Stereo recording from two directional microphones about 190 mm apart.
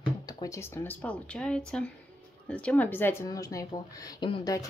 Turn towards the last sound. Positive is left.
turn(degrees=20)  # may be behind; listen again after turning